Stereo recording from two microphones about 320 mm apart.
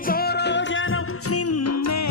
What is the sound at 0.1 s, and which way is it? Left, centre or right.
Music, left.